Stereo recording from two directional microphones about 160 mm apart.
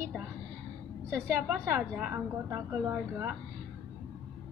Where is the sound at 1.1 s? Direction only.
15° right (ahead or behind).